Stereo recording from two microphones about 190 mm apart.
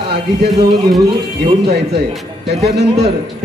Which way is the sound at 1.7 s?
60° right (ahead or behind).